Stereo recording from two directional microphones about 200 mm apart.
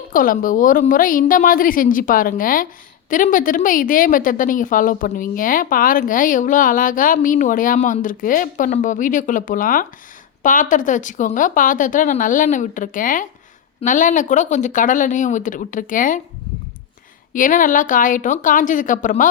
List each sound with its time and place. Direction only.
0.1 s a woman's voice: 45° left (ahead or behind)
17.3 s speech: 40° left (ahead or behind)